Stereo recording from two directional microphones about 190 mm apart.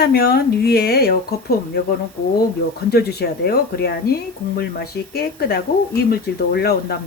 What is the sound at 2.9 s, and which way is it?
Speech, 55° left (ahead or behind).